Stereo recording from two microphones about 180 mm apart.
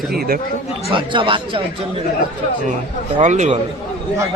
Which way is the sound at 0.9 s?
30° right (ahead or behind).